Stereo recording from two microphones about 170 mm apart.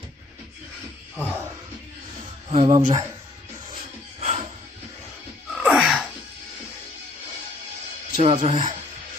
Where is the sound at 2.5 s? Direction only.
45° right (ahead or behind).